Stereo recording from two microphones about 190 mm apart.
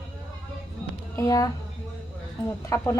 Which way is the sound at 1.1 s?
20° left (ahead or behind).